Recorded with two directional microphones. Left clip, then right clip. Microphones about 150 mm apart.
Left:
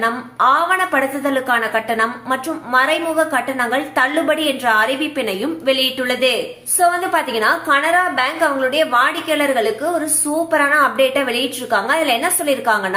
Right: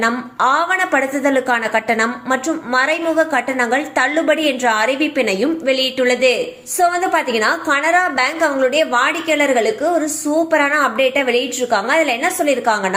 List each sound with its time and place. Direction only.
0.0 s a woman's voice: 25° right (ahead or behind)